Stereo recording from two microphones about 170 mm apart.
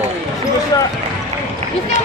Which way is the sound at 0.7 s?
20° left (ahead or behind).